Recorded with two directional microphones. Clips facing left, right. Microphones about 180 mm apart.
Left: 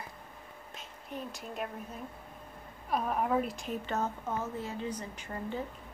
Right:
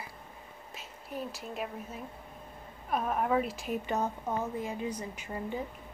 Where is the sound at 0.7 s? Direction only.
5° right (ahead or behind).